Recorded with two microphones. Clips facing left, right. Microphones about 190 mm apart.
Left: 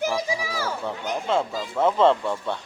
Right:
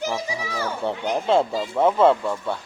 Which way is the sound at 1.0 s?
40° right (ahead or behind).